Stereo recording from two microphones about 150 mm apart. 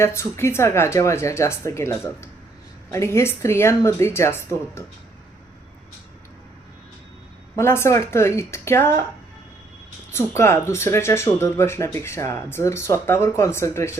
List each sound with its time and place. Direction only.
0.0 s speech: 15° left (ahead or behind)
7.5 s speech: 15° left (ahead or behind)
10.1 s speech: 15° left (ahead or behind)